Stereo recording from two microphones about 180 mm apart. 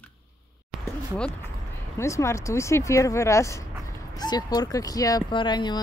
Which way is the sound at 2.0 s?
15° left (ahead or behind).